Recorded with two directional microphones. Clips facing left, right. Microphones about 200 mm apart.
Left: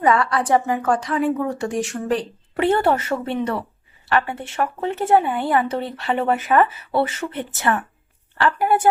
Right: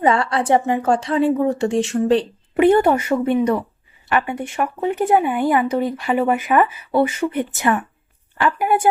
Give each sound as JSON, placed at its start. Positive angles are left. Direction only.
{"t": 0.0, "sound": "a woman's voice", "side_deg": -25}
{"t": 2.6, "sound": "speech", "side_deg": -15}